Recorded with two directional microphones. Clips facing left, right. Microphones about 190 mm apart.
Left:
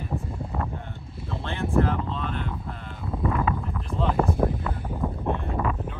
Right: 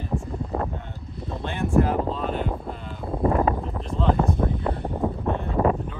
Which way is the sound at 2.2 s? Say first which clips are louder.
Right 5 dB; 40° right (ahead or behind).